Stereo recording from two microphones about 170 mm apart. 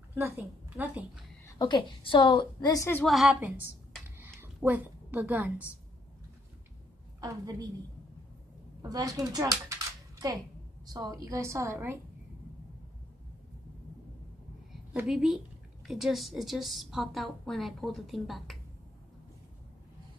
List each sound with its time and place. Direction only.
0.8 s a woman's voice: 10° right (ahead or behind)
1.6 s a woman's voice: 30° left (ahead or behind)
3.0 s a woman's voice: centre (ahead or behind)
3.3 s a woman's voice: 10° right (ahead or behind)
7.2 s a woman's voice: 25° right (ahead or behind)
8.8 s a child's voice: 20° right (ahead or behind)
15.0 s a woman's voice: centre (ahead or behind)